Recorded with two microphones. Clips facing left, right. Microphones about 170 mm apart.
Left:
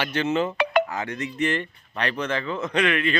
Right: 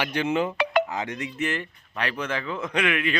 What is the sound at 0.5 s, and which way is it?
Telephone dialing, 55° left (ahead or behind).